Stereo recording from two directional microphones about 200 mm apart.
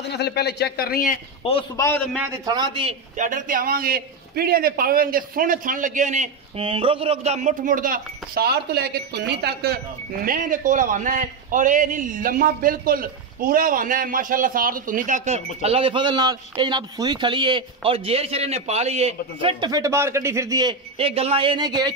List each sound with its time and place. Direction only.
0.0 s a man's voice: 55° left (ahead or behind)
1.4 s a man's voice: 30° left (ahead or behind)
1.8 s a man's voice: 10° left (ahead or behind)
2.1 s a man's voice: 15° right (ahead or behind); by 9.8 s 55° right (ahead or behind)
10.2 s a man's voice: 40° right (ahead or behind); by 21.9 s 20° right (ahead or behind)